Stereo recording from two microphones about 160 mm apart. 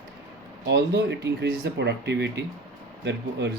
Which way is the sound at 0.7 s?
90° right.